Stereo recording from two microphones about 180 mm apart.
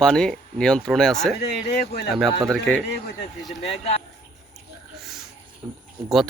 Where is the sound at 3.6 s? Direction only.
35° left (ahead or behind).